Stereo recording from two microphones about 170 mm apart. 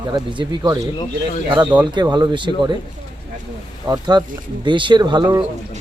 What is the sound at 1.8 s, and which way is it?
Speech, 25° right (ahead or behind).